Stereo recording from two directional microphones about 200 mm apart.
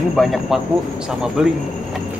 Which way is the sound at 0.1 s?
Centre (ahead or behind).